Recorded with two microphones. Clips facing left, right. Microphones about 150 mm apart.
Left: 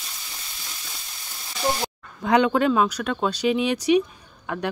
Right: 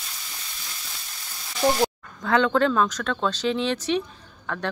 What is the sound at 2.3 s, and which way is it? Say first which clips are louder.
Speech: left 2 dB; 15° left (ahead or behind).